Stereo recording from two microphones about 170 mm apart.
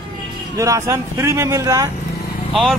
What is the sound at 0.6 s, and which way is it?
A man's voice, 20° right (ahead or behind).